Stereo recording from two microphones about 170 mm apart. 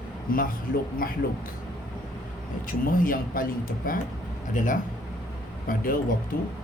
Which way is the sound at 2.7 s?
55° left (ahead or behind).